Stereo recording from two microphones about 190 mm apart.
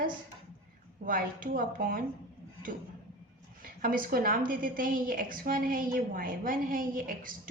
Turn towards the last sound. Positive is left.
turn(degrees=-45)  # may be behind; listen again after turning